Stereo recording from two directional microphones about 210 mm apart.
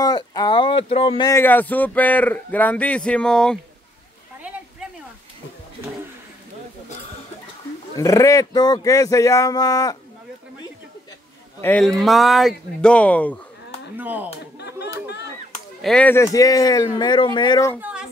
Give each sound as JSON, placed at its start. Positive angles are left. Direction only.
{"t": 0.0, "sound": "speech", "side_deg": 20}
{"t": 1.3, "sound": "a man's voice", "side_deg": 10}
{"t": 4.4, "sound": "a sound", "side_deg": -5}
{"t": 7.9, "sound": "a man's voice", "side_deg": 15}
{"t": 11.6, "sound": "speech", "side_deg": 5}
{"t": 13.9, "sound": "speech", "side_deg": -10}
{"t": 14.6, "sound": "a sound", "side_deg": 50}
{"t": 15.8, "sound": "a man's voice", "side_deg": 5}
{"t": 17.7, "sound": "a sound", "side_deg": -5}